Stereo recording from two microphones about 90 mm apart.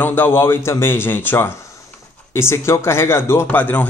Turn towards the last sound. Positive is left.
turn(degrees=20)  # may be behind; listen again after turning